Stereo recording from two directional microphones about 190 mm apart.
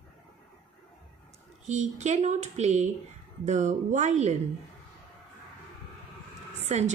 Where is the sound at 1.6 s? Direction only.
40° right (ahead or behind).